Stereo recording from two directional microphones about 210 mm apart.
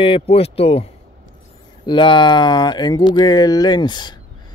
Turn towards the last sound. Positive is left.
turn(degrees=20)  # may be behind; listen again after turning